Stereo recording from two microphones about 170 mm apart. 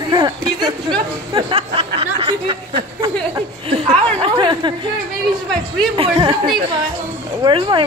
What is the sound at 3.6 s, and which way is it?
Chuckle, 35° right (ahead or behind).